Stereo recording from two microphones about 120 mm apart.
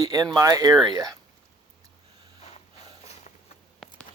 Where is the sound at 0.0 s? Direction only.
30° right (ahead or behind).